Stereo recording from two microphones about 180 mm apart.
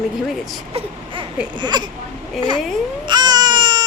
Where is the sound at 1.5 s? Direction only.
25° right (ahead or behind).